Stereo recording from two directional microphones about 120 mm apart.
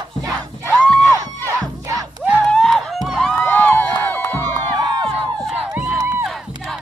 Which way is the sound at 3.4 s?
15° left (ahead or behind).